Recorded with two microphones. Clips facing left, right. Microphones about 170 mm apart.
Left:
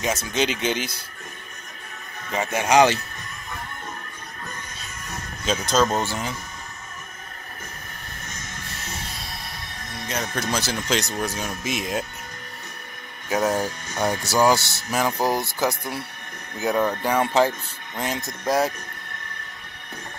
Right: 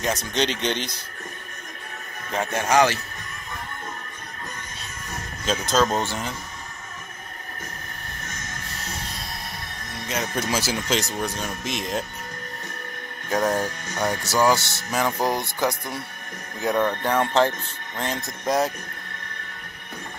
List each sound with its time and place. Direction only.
0.0 s speech: 5° left (ahead or behind)
2.3 s speech: centre (ahead or behind)
2.6 s speech: 20° left (ahead or behind)
5.4 s speech: centre (ahead or behind)
10.0 s speech: 5° right (ahead or behind)
13.3 s speech: 5° left (ahead or behind)